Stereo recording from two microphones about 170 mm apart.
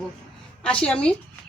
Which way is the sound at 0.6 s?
5° left (ahead or behind).